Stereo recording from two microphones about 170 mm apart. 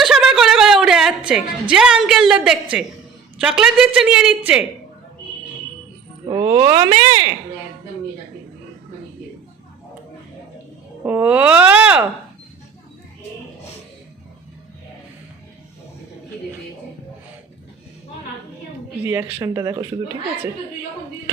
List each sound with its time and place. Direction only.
0.0 s a sound: centre (ahead or behind)
1.7 s a woman's voice: 5° right (ahead or behind)
6.2 s speech: 20° right (ahead or behind)
11.0 s speech: 10° right (ahead or behind)
19.0 s speech: 15° right (ahead or behind)